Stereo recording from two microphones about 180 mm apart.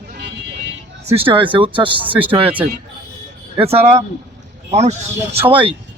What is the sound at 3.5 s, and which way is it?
Speech, 30° right (ahead or behind).